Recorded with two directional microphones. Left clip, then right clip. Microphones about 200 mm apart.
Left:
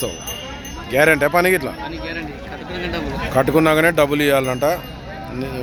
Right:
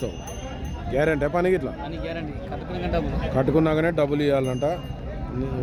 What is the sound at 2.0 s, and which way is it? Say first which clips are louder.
Speech: left 4 dB; 55° right (ahead or behind).